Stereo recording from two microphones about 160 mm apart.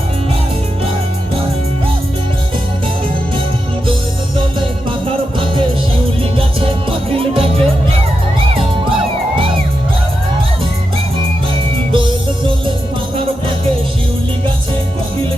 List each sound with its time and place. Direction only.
4.9 s music: 30° right (ahead or behind)
7.1 s music: 35° right (ahead or behind)
11.9 s music: 30° right (ahead or behind)